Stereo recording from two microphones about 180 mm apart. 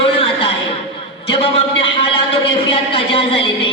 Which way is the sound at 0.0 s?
30° left (ahead or behind).